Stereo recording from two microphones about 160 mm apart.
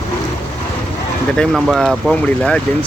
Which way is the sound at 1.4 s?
Centre (ahead or behind).